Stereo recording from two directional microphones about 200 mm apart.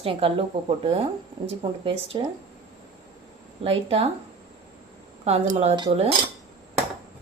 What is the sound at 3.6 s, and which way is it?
Speech, 30° right (ahead or behind).